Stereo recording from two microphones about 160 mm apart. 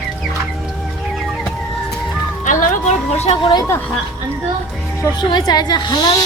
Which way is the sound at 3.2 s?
30° left (ahead or behind).